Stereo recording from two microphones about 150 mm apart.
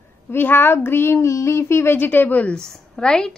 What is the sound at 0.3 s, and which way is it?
Speech, 15° left (ahead or behind).